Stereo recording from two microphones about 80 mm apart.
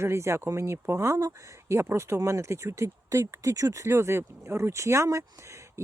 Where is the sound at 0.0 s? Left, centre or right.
Right.